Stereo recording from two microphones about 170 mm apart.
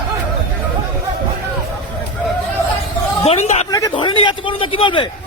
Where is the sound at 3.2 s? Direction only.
40° left (ahead or behind).